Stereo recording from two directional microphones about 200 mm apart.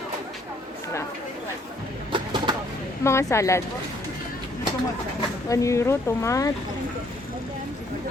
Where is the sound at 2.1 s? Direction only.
20° right (ahead or behind).